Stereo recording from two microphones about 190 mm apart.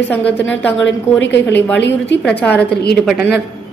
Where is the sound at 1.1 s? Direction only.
70° left (ahead or behind).